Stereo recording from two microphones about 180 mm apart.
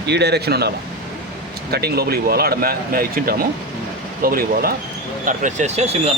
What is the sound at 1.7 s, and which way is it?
A man's voice, 60° right (ahead or behind).